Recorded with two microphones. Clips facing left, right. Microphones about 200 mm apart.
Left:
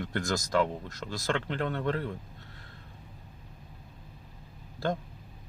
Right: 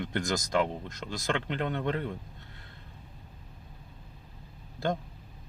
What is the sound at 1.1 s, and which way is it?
Speech, 20° right (ahead or behind).